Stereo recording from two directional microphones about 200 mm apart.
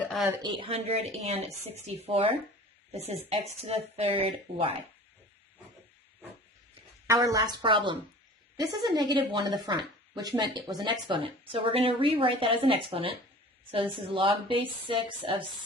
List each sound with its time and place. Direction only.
0.4 s speech: 25° right (ahead or behind)
7.1 s speech: 15° right (ahead or behind)